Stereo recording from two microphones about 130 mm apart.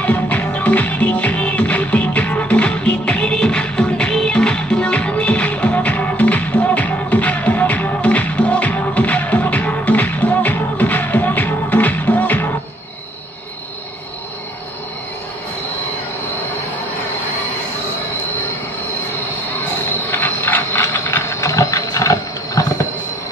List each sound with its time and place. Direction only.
0.0 s music: 10° left (ahead or behind)
20.1 s ratchet: 15° left (ahead or behind)